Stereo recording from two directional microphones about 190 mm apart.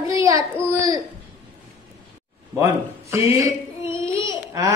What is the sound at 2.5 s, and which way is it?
Speech, 15° right (ahead or behind).